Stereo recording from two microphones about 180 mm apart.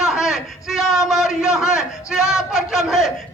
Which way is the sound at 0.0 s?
Centre (ahead or behind).